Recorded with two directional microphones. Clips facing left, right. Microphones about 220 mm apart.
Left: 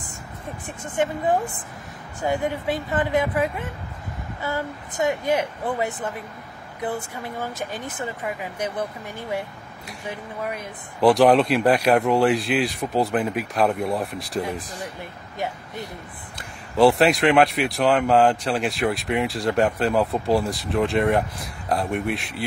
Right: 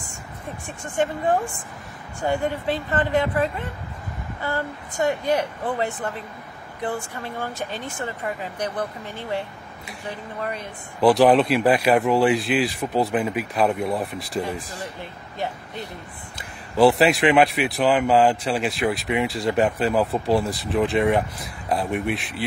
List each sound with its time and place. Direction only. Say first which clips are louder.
2.2 s speech: even; 15° left (ahead or behind)
7.0 s speech: even; 15° left (ahead or behind)
11.0 s speech: even; centre (ahead or behind)
16.3 s speech: even; centre (ahead or behind)